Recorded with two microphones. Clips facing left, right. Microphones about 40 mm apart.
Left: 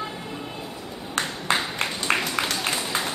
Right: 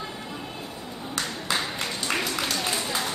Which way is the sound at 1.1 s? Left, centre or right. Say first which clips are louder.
Left 4 dB; left.